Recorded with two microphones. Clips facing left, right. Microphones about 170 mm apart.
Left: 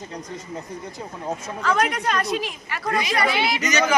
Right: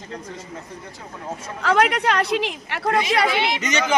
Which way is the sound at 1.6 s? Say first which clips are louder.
Right 4 dB; 70° right (ahead or behind).